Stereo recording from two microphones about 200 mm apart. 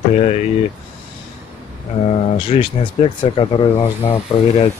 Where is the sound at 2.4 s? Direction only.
30° left (ahead or behind).